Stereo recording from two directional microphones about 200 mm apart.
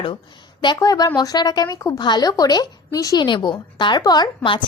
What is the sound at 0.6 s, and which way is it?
A woman's voice, 20° left (ahead or behind).